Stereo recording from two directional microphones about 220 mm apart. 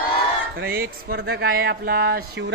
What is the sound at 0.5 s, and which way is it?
Speech, 45° right (ahead or behind).